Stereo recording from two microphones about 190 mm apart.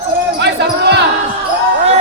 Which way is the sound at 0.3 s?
65° right (ahead or behind).